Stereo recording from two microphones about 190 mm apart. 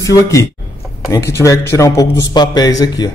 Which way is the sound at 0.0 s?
15° left (ahead or behind).